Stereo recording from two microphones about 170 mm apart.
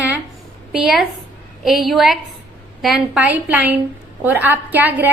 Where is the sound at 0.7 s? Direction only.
5° right (ahead or behind).